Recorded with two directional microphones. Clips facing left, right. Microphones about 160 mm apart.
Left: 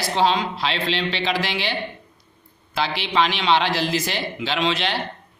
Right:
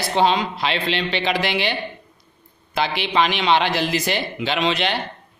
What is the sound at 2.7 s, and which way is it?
A man's voice, 55° right (ahead or behind).